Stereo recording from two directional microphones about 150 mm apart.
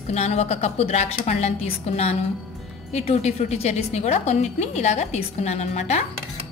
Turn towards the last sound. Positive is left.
turn(degrees=50)  # may be behind; listen again after turning